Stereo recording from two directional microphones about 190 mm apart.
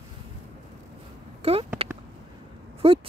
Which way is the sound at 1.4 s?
30° right (ahead or behind).